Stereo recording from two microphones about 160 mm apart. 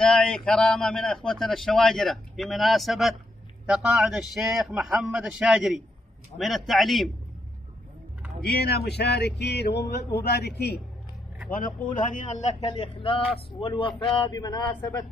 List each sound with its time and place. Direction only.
0.0 s a man's voice: 5° left (ahead or behind)
8.5 s male singing: 80° left
11.9 s a man's voice: 55° left (ahead or behind)
12.5 s speech: 35° left (ahead or behind)